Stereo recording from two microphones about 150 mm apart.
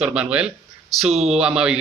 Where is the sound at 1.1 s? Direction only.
45° right (ahead or behind).